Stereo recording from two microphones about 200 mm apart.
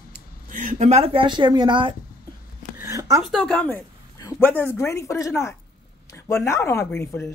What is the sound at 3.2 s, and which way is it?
Speech, centre (ahead or behind).